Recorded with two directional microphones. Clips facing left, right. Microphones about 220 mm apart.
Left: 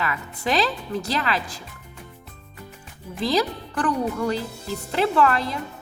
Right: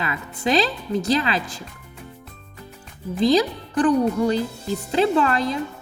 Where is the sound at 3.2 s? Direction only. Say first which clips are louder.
Right 5 dB; 20° right (ahead or behind).